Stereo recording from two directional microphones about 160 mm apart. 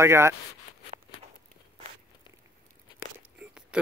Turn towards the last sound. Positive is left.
turn(degrees=-5)  # may be behind; listen again after turning